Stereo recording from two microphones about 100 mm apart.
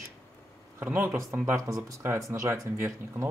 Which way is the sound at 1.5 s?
30° right (ahead or behind).